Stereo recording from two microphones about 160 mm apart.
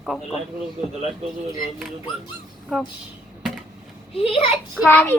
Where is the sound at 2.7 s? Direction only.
Centre (ahead or behind).